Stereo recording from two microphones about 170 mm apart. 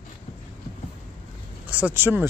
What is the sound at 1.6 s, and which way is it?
Speech, 10° right (ahead or behind).